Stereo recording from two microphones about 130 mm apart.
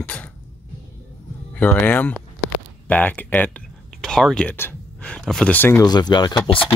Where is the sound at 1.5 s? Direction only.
10° left (ahead or behind).